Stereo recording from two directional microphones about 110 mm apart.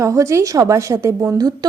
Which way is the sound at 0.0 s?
25° right (ahead or behind).